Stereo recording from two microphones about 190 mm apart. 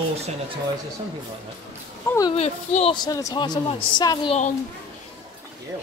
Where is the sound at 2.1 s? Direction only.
15° left (ahead or behind).